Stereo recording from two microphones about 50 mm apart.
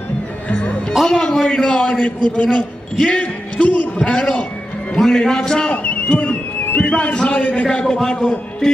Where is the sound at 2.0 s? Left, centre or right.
Left.